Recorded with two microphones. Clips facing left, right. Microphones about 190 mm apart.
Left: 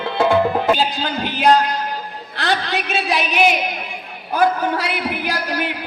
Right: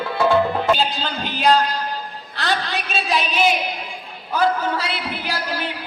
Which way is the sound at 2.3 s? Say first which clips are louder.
Left 3 dB; 60° left (ahead or behind).